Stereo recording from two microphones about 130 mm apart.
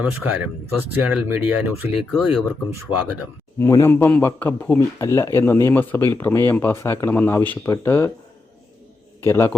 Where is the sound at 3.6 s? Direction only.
20° left (ahead or behind).